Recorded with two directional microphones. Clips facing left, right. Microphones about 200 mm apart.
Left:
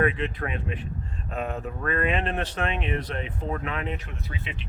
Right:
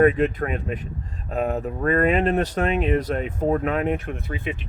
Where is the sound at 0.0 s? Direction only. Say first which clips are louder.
Right 8 dB; 45° right (ahead or behind).